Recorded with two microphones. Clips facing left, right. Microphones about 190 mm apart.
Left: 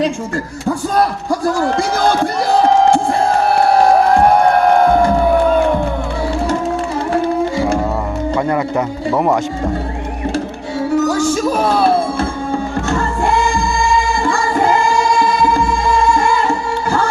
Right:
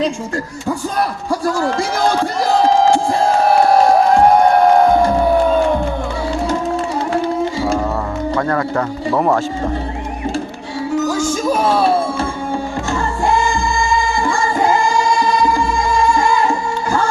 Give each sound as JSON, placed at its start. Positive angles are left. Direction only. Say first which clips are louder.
{"t": 8.4, "sound": "speech", "louder": "left 1 dB", "side_deg": 15}
{"t": 10.9, "sound": "music", "louder": "left 3 dB", "side_deg": 65}